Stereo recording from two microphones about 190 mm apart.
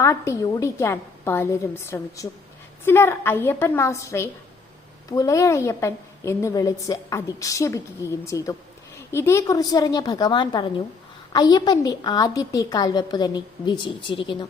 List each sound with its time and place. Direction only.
0.0 s a woman's voice: 15° left (ahead or behind)